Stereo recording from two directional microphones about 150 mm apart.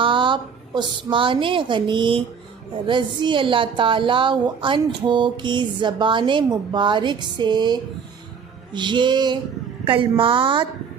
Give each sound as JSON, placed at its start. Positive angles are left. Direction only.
{"t": 0.0, "sound": "a woman's voice", "side_deg": -35}